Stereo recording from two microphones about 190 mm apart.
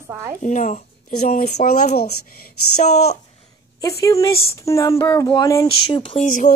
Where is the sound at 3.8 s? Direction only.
15° left (ahead or behind).